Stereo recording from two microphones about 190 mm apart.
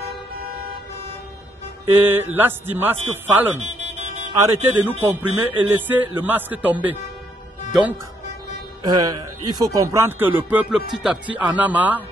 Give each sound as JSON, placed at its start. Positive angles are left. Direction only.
{"t": 2.0, "sound": "speech", "side_deg": -10}
{"t": 3.5, "sound": "music", "side_deg": -40}
{"t": 4.3, "sound": "speech", "side_deg": -15}
{"t": 8.8, "sound": "speech", "side_deg": -20}